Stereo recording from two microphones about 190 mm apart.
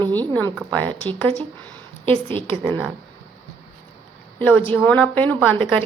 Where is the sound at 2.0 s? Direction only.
25° right (ahead or behind).